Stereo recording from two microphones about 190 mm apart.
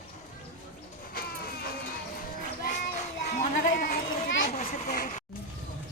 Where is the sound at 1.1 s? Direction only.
50° left (ahead or behind).